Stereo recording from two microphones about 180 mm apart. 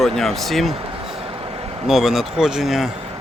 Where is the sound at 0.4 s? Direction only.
Centre (ahead or behind).